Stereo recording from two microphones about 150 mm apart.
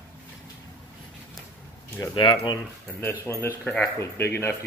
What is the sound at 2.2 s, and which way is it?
Speech, 30° left (ahead or behind).